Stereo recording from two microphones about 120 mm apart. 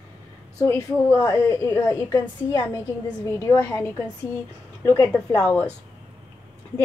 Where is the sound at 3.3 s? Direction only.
20° left (ahead or behind).